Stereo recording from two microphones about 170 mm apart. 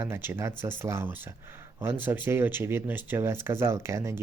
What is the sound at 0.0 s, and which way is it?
Speech, 15° right (ahead or behind).